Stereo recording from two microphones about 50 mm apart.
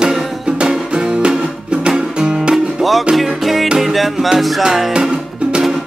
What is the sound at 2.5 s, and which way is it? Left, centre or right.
Music, centre.